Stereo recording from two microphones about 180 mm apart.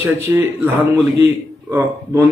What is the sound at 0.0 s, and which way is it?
Speech, 15° right (ahead or behind).